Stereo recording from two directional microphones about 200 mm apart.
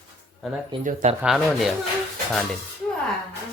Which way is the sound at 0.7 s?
20° right (ahead or behind).